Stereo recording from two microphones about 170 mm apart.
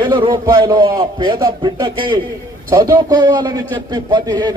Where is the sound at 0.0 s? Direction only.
30° right (ahead or behind).